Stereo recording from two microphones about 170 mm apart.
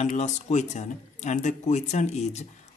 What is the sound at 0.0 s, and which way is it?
Speech, 45° left (ahead or behind).